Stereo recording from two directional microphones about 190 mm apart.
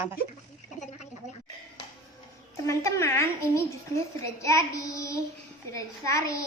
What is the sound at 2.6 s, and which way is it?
A woman's voice, 15° left (ahead or behind).